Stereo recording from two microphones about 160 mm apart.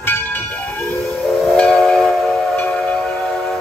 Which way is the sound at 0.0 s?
10° left (ahead or behind).